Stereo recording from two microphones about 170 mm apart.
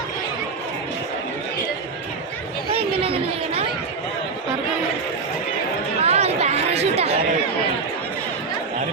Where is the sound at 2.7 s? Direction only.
35° right (ahead or behind).